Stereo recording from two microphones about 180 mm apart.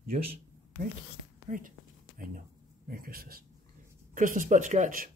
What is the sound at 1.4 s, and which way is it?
Speech, 50° right (ahead or behind).